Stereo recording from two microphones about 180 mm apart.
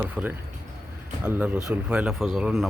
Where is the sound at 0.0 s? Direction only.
10° right (ahead or behind).